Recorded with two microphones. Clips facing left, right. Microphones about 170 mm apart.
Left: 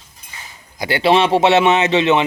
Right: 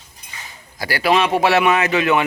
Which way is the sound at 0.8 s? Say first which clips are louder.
Left 3 dB; 25° left (ahead or behind).